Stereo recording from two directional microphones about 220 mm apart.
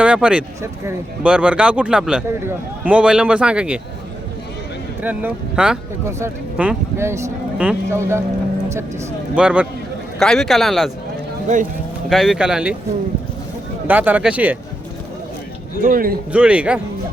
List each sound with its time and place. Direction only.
0.0 s speech: 5° right (ahead or behind)
5.0 s speech: 5° right (ahead or behind)
9.3 s speech: 5° right (ahead or behind)
12.0 s speech: centre (ahead or behind)
13.8 s speech: 10° right (ahead or behind)
15.8 s a man's voice: 40° right (ahead or behind)
16.3 s speech: 5° right (ahead or behind)